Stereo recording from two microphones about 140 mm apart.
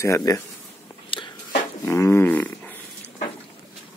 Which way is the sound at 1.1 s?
40° left (ahead or behind).